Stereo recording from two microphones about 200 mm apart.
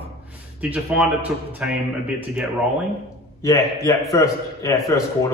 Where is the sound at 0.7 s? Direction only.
5° right (ahead or behind).